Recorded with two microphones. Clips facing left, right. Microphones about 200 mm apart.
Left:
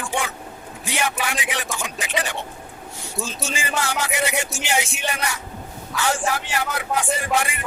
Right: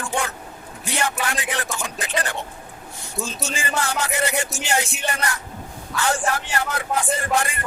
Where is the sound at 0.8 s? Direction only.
15° left (ahead or behind).